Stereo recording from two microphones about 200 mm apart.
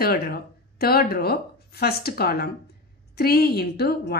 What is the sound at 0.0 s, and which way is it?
A woman's voice, 50° left (ahead or behind).